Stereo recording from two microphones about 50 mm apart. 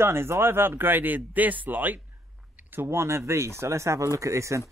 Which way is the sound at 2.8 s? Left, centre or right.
Right.